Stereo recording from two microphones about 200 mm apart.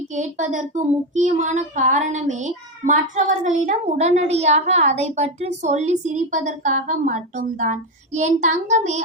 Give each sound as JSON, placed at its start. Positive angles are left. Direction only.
{"t": 0.1, "sound": "a child's voice", "side_deg": -35}